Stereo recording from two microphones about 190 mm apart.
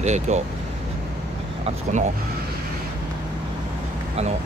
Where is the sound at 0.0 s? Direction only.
35° right (ahead or behind).